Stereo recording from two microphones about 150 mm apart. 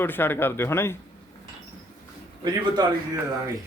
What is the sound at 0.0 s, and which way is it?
Speech, 15° left (ahead or behind).